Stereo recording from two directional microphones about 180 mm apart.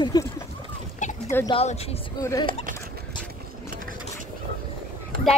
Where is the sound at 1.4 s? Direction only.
35° left (ahead or behind).